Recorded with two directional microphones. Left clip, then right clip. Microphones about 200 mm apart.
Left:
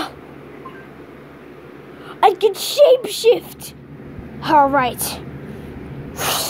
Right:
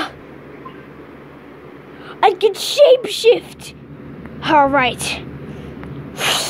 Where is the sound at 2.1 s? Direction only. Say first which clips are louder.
Even; 10° left (ahead or behind).